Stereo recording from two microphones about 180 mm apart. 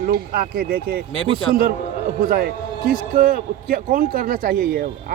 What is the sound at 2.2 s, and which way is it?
A man's voice, 55° right (ahead or behind).